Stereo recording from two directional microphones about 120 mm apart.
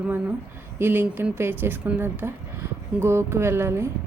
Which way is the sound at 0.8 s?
15° right (ahead or behind).